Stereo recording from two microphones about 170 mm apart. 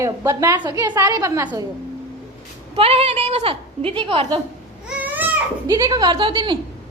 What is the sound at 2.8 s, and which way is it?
A woman's voice, 35° right (ahead or behind).